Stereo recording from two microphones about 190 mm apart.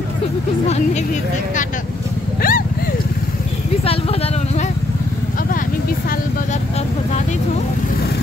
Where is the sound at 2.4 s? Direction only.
50° left (ahead or behind).